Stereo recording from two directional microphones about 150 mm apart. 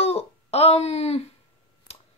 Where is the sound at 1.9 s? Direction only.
45° left (ahead or behind).